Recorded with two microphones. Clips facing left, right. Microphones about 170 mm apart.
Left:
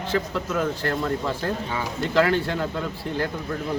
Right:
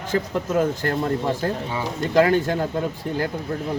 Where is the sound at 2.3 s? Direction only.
45° right (ahead or behind).